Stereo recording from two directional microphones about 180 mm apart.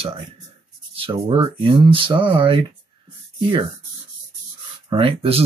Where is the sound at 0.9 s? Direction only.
30° right (ahead or behind).